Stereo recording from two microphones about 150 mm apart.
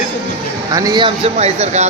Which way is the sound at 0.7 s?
25° right (ahead or behind).